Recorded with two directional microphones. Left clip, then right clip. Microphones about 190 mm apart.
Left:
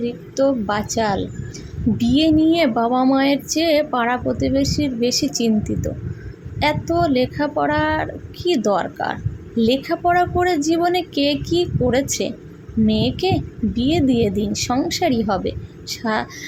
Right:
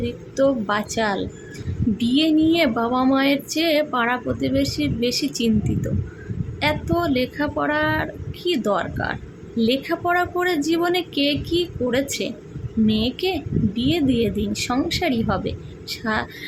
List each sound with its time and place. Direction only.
0.0 s a woman's voice: 5° left (ahead or behind)